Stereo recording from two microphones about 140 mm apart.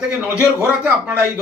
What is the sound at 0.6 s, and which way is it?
Speech, 20° right (ahead or behind).